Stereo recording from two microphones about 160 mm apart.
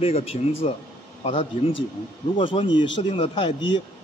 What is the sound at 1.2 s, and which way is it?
Speech, 30° left (ahead or behind).